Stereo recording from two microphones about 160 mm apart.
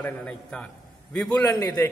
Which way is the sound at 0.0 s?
5° left (ahead or behind).